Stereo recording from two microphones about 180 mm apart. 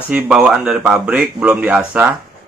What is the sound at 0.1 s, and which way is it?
Speech, 5° right (ahead or behind).